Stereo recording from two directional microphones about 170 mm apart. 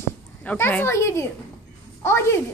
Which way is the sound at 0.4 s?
10° left (ahead or behind).